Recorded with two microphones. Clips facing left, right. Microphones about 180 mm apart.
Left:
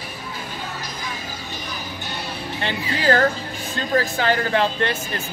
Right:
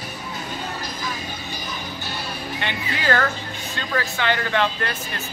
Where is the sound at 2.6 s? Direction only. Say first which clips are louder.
Left 5 dB; 35° left (ahead or behind).